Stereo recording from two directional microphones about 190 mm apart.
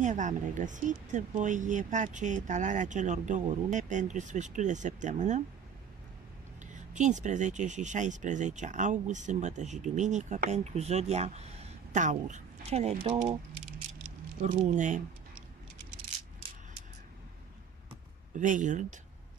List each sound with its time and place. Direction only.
0.0 s speech: 40° right (ahead or behind)
6.6 s speech: 40° right (ahead or behind)
14.0 s squish: 40° right (ahead or behind)
18.3 s speech: 40° right (ahead or behind)